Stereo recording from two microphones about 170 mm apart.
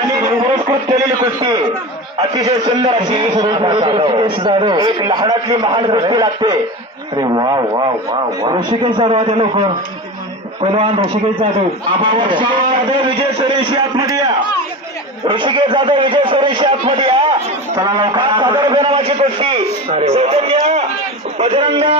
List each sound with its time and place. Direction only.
1.2 s a man's voice: 20° right (ahead or behind)
11.9 s a man's voice: 30° right (ahead or behind)
15.2 s a man's voice: 25° right (ahead or behind)